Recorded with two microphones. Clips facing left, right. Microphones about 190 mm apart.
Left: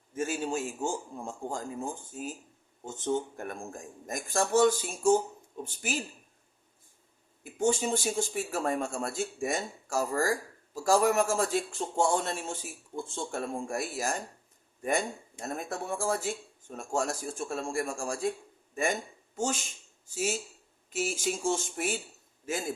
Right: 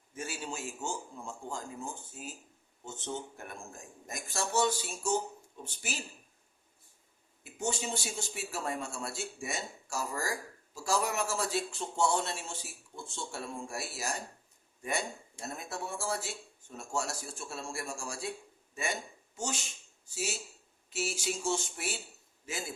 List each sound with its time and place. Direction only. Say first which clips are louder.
0.1 s speech: left 9 dB; 45° left (ahead or behind)
7.4 s speech: left 8 dB; 50° left (ahead or behind)